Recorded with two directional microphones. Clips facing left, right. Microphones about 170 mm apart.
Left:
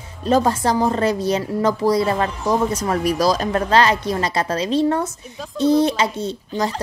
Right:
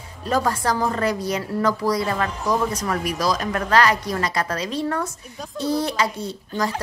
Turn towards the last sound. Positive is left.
turn(degrees=25)  # may be behind; listen again after turning